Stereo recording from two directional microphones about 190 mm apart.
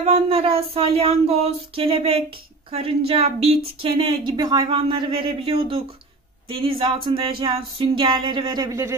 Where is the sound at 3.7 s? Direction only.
30° right (ahead or behind).